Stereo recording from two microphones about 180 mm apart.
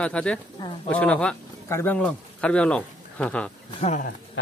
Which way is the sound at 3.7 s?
35° left (ahead or behind).